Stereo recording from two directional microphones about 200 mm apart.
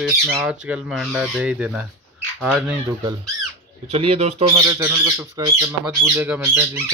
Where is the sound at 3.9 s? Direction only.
30° right (ahead or behind).